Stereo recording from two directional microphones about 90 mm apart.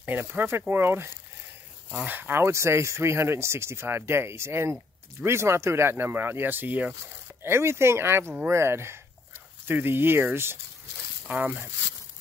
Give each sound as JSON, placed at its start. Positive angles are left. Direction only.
{"t": 0.0, "sound": "speech", "side_deg": -20}
{"t": 11.2, "sound": "speech", "side_deg": -15}